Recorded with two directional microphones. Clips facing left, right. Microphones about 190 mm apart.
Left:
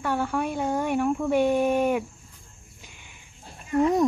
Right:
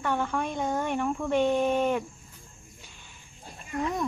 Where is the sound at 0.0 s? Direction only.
10° left (ahead or behind).